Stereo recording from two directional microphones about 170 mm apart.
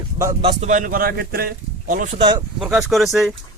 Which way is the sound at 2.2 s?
25° right (ahead or behind).